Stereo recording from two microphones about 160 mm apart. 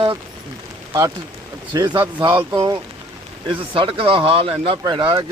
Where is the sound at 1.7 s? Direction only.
25° right (ahead or behind).